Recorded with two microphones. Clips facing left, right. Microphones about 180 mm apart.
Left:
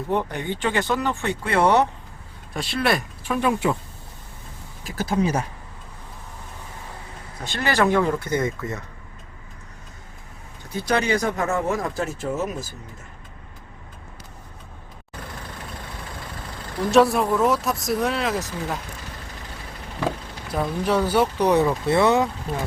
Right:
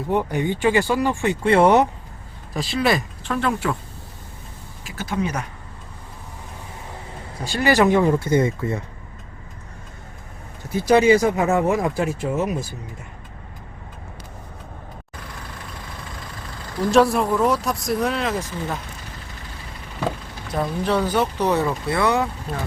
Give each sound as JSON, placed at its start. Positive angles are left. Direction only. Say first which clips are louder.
{"t": 0.1, "sound": "speech", "louder": "right 4 dB", "side_deg": -10}
{"t": 1.5, "sound": "speech", "louder": "right 4 dB", "side_deg": -25}
{"t": 2.5, "sound": "speech", "louder": "right 2 dB", "side_deg": 0}
{"t": 3.2, "sound": "speech", "louder": "left 2 dB", "side_deg": 10}
{"t": 4.9, "sound": "speech", "louder": "left 3 dB", "side_deg": 35}
{"t": 7.4, "sound": "speech", "louder": "right 4 dB", "side_deg": -10}
{"t": 10.9, "sound": "speech", "louder": "right 7 dB", "side_deg": -20}
{"t": 16.9, "sound": "speech", "louder": "even", "side_deg": 0}
{"t": 20.5, "sound": "speech", "louder": "even", "side_deg": 5}